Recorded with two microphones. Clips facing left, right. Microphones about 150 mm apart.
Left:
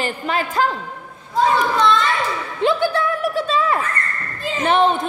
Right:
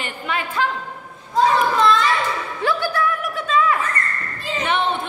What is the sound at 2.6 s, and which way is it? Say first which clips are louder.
A woman's voice: left 4 dB; 20° left (ahead or behind).